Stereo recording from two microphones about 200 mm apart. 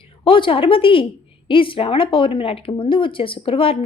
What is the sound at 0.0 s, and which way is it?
A woman's voice, 25° left (ahead or behind).